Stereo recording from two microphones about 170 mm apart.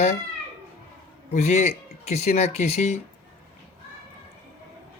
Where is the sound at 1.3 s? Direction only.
40° left (ahead or behind).